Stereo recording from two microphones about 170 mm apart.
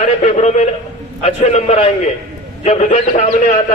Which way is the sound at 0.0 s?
40° left (ahead or behind).